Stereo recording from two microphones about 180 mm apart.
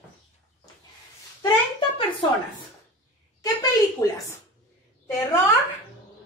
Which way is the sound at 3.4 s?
20° left (ahead or behind).